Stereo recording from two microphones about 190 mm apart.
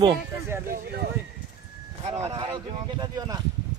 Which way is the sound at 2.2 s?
20° right (ahead or behind).